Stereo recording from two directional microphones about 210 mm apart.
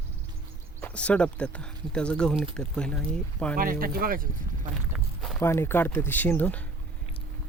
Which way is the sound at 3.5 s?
45° right (ahead or behind).